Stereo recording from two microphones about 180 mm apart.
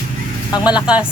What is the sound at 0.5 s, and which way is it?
Speech, 25° left (ahead or behind).